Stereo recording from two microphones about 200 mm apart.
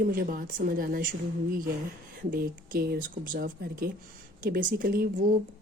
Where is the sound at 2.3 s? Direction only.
50° right (ahead or behind).